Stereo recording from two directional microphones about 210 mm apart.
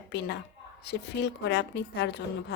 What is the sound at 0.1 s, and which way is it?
A woman's voice, 55° left (ahead or behind).